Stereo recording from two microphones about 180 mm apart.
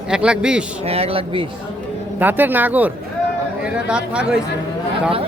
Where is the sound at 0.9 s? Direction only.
35° right (ahead or behind).